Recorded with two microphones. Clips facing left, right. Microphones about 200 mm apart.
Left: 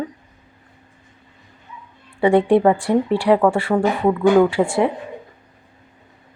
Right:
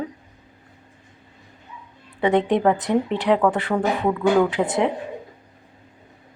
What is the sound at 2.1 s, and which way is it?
A woman's voice, 10° left (ahead or behind).